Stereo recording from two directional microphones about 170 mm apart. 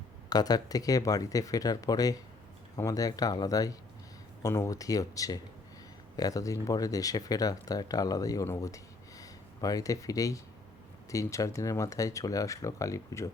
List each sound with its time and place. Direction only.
0.3 s speech: 25° left (ahead or behind)